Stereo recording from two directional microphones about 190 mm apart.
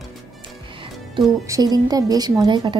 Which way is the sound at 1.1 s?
20° right (ahead or behind).